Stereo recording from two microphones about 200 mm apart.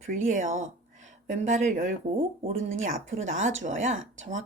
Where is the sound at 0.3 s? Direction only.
35° right (ahead or behind).